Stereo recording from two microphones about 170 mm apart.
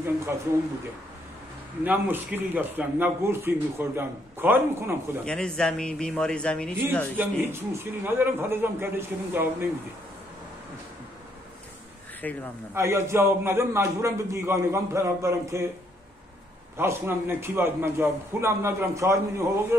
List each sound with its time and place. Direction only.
1.9 s a man's voice: 10° right (ahead or behind)
5.2 s a man's voice: 5° left (ahead or behind)
7.2 s a man's voice: 15° right (ahead or behind)
12.2 s speech: 10° left (ahead or behind)
12.7 s a man's voice: 15° right (ahead or behind)
16.7 s a man's voice: 15° right (ahead or behind)